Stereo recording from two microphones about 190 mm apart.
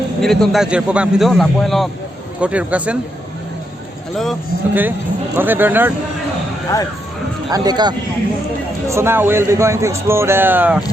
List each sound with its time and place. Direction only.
0.2 s a man's voice: centre (ahead or behind)
4.1 s a man's voice: centre (ahead or behind)
4.7 s speech: 10° right (ahead or behind)
7.5 s speech: 20° right (ahead or behind)